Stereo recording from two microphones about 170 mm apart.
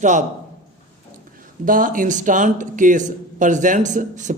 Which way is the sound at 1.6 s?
55° right (ahead or behind).